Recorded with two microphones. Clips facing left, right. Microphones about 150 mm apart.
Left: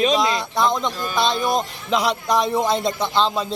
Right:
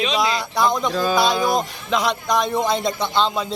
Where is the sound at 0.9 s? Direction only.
90° right.